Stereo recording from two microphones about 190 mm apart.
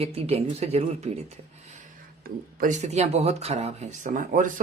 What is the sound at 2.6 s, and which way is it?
A man's voice, 40° right (ahead or behind).